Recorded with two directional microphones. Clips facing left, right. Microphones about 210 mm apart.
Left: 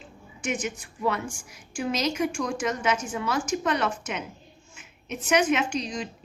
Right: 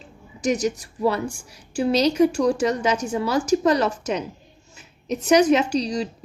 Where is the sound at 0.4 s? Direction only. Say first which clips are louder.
Right 8 dB; 40° right (ahead or behind).